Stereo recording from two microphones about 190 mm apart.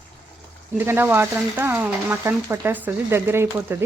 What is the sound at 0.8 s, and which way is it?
Speech, 10° right (ahead or behind).